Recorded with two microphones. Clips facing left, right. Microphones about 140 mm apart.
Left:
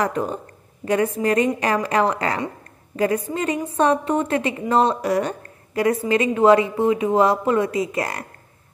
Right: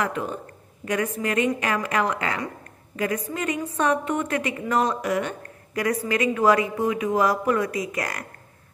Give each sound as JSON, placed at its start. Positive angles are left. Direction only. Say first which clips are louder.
{"t": 0.0, "sound": "a woman's voice", "louder": "left 4 dB", "side_deg": 40}